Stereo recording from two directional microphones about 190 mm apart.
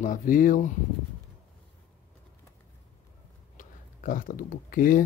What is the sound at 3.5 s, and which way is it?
Speech, 45° left (ahead or behind).